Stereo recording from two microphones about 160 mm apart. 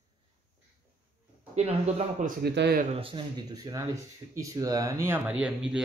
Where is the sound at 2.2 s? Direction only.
90° right.